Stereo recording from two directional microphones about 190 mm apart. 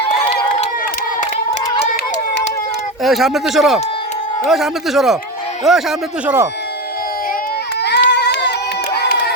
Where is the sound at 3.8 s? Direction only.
30° left (ahead or behind).